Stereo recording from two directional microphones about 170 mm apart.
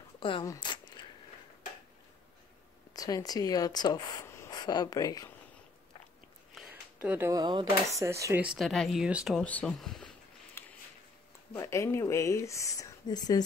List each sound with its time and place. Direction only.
0.2 s speech: 30° left (ahead or behind)
0.5 s a sound: 25° left (ahead or behind)
2.9 s speech: 20° left (ahead or behind)
6.5 s speech: 5° right (ahead or behind)
10.6 s a sound: 15° left (ahead or behind)
11.5 s speech: 15° left (ahead or behind)